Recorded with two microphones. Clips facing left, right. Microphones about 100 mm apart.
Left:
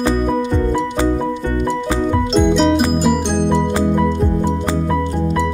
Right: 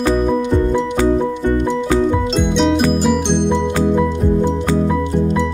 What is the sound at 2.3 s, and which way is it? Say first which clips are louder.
Music: left 4 dB; centre (ahead or behind).